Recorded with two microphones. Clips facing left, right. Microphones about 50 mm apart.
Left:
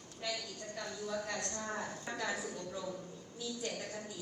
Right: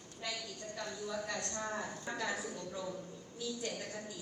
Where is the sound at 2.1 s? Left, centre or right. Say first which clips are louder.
Even; right.